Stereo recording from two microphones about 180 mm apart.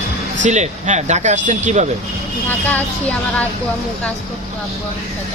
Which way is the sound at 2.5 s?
10° left (ahead or behind).